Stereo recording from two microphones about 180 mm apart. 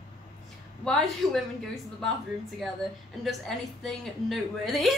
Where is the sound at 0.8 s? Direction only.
5° left (ahead or behind).